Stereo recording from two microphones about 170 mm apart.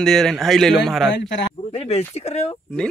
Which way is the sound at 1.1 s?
90° left.